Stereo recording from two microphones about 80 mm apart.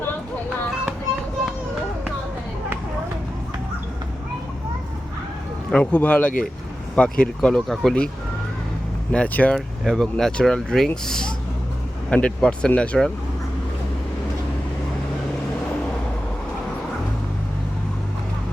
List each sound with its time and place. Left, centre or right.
5.7 s speech: centre
9.1 s speech: centre
9.6 s speech: centre